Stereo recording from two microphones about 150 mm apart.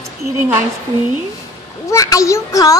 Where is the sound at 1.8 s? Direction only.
20° left (ahead or behind).